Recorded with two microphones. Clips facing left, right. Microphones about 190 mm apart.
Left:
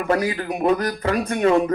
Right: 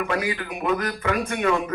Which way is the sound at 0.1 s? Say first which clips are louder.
Left 5 dB; 35° left (ahead or behind).